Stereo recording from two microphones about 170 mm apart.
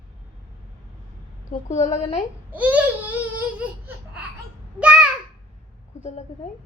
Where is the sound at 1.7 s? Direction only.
45° left (ahead or behind).